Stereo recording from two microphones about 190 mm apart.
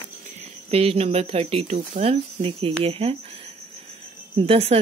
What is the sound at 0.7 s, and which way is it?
Speech, 30° right (ahead or behind).